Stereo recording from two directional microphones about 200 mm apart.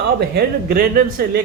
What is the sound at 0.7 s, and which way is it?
Speech, 50° right (ahead or behind).